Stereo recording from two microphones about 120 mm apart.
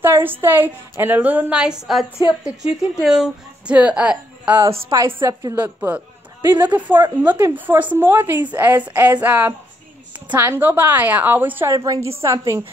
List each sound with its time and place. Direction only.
0.0 s a woman's voice: 15° right (ahead or behind)
4.6 s a woman's voice: 55° right (ahead or behind)
5.2 s a woman's voice: 25° right (ahead or behind)
11.7 s a woman's voice: 30° right (ahead or behind)